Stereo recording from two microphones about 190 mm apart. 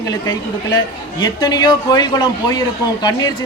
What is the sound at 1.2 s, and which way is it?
A man's voice, 20° left (ahead or behind).